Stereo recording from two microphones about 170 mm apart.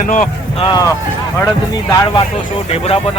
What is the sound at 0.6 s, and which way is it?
Speech, 25° left (ahead or behind).